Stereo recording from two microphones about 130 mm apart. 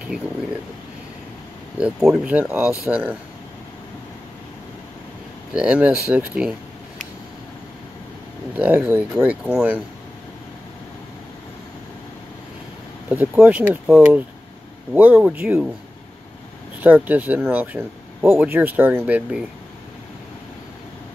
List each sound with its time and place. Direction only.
1.8 s speech: 5° right (ahead or behind)
5.5 s speech: 10° right (ahead or behind)
8.5 s speech: 10° right (ahead or behind)
13.1 s speech: 15° right (ahead or behind)
16.8 s speech: 15° right (ahead or behind)